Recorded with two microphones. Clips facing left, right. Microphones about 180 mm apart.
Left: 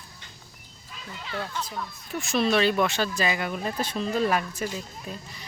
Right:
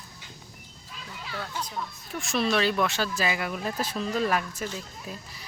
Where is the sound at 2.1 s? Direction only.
Centre (ahead or behind).